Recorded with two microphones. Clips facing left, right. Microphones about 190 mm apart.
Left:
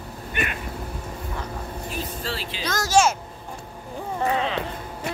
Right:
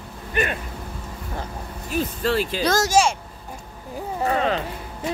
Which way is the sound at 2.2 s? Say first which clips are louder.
Right 9 dB; 55° right (ahead or behind).